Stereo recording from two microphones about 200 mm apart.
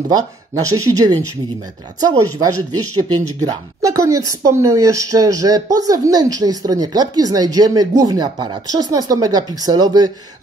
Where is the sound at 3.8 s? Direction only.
15° right (ahead or behind).